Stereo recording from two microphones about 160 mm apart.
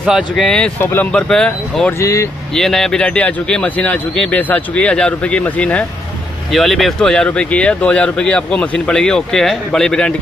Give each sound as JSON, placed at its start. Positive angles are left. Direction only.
{"t": 0.0, "sound": "speech", "side_deg": 0}
{"t": 1.9, "sound": "speech", "side_deg": 20}
{"t": 2.5, "sound": "speech", "side_deg": 5}